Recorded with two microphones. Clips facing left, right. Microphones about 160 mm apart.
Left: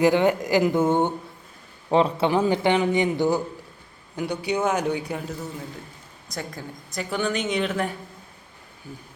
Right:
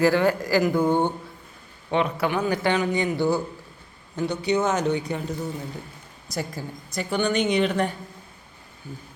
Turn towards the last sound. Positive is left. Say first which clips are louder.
# right 3 dB
turn(degrees=0)  # may be behind; listen again after turning